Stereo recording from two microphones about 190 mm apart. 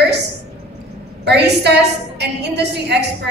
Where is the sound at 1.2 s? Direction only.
60° right (ahead or behind).